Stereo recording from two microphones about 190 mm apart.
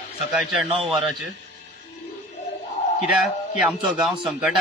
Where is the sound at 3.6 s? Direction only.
Centre (ahead or behind).